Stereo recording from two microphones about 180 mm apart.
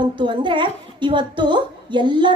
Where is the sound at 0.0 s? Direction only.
25° right (ahead or behind).